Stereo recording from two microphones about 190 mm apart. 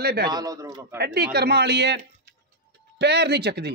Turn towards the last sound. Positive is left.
turn(degrees=-60)  # may be behind; listen again after turning